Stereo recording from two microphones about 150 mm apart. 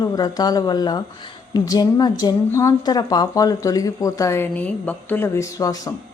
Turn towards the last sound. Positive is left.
turn(degrees=20)  # may be behind; listen again after turning